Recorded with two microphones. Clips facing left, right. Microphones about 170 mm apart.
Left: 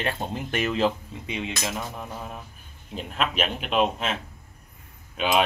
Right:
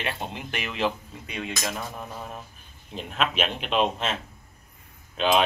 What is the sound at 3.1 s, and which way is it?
Speech, centre (ahead or behind).